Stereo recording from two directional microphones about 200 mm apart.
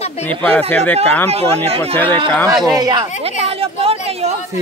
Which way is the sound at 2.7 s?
20° right (ahead or behind).